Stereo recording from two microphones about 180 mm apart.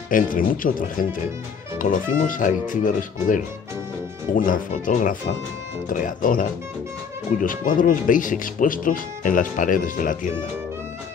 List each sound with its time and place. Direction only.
0.1 s speech: 50° left (ahead or behind)